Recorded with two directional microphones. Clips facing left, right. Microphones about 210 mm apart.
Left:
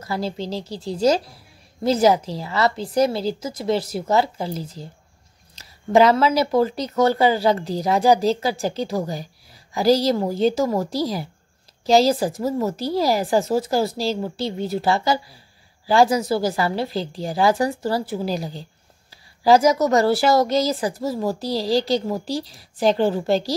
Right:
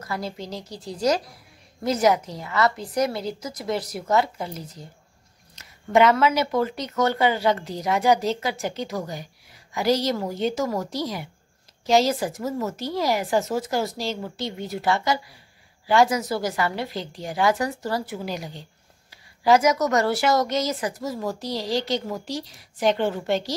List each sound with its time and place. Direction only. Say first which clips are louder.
0.0 s a woman's voice: left 5 dB; 30° left (ahead or behind)